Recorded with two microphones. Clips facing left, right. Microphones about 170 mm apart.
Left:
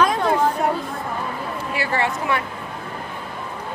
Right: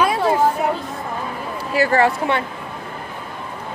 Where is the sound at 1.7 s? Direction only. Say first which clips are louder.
Right 8 dB; 40° right (ahead or behind).